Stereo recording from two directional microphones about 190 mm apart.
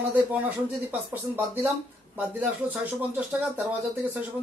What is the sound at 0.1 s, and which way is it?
Speech, 10° right (ahead or behind).